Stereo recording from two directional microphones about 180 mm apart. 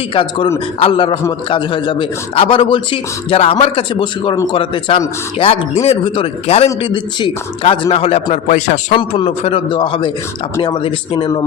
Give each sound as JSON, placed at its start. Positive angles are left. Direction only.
{"t": 0.1, "sound": "a man's voice", "side_deg": 30}